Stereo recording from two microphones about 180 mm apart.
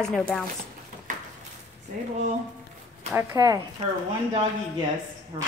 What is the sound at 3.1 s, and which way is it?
Speech, 15° right (ahead or behind).